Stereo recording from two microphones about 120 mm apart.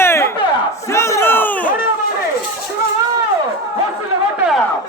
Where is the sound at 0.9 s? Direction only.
25° left (ahead or behind).